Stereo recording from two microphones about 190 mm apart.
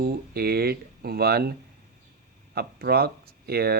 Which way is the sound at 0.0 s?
55° right (ahead or behind).